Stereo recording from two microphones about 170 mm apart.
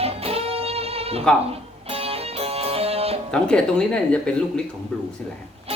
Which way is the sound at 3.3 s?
5° left (ahead or behind).